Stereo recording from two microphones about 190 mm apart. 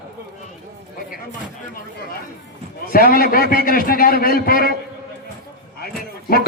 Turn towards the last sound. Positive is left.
turn(degrees=50)  # may be behind; listen again after turning